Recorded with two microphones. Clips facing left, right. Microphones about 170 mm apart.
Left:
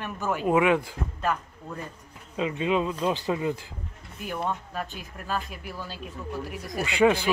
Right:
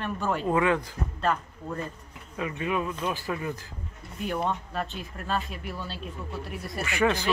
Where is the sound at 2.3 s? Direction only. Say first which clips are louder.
Left 4 dB; 20° left (ahead or behind).